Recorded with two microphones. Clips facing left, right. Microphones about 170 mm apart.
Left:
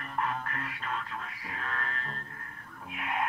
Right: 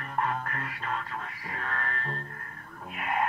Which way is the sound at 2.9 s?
45° right (ahead or behind).